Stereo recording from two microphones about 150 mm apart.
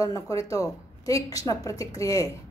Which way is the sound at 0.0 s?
25° left (ahead or behind).